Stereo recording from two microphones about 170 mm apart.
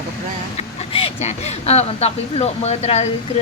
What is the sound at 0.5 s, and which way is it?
Speech, 35° left (ahead or behind).